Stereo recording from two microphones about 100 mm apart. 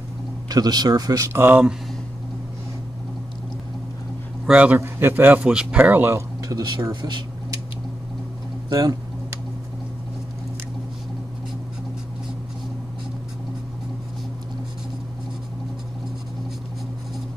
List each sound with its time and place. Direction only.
0.5 s speech: 40° right (ahead or behind)
1.3 s speech: 20° right (ahead or behind)
4.5 s a man's voice: 15° right (ahead or behind)
4.7 s speech: 25° right (ahead or behind)
6.1 s speech: 40° right (ahead or behind)
6.9 s speech: 50° right (ahead or behind)
8.6 s speech: 45° right (ahead or behind)